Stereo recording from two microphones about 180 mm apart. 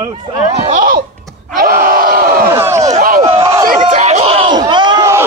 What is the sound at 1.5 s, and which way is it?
Crowd, 55° right (ahead or behind).